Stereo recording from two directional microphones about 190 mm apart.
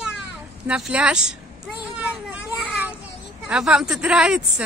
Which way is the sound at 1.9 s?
5° right (ahead or behind).